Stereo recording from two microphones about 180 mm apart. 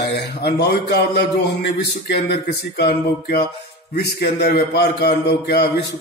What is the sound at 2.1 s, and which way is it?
A man's voice, 65° left (ahead or behind).